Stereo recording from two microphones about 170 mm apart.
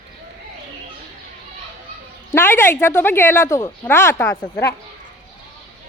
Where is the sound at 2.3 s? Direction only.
15° left (ahead or behind).